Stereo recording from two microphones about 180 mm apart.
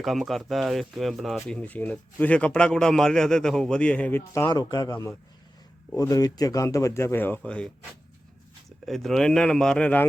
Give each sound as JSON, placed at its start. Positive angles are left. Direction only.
{"t": 0.0, "sound": "a man's voice", "side_deg": 0}
{"t": 8.9, "sound": "speech", "side_deg": 0}